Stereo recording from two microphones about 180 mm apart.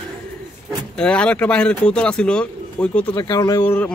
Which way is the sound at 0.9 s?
5° left (ahead or behind).